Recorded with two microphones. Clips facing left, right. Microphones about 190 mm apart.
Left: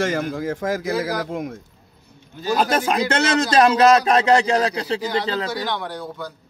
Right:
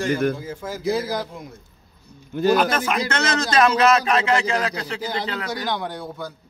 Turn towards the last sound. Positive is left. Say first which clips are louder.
# even
turn(degrees=-10)  # may be behind; listen again after turning